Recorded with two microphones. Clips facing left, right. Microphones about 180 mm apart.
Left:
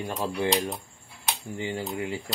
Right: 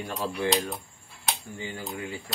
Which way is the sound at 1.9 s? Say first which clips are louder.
Left 4 dB; 20° left (ahead or behind).